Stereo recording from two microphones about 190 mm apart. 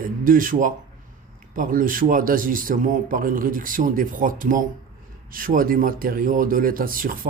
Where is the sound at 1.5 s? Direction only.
45° right (ahead or behind).